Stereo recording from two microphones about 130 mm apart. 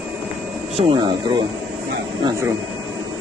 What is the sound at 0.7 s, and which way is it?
Speech, 40° right (ahead or behind).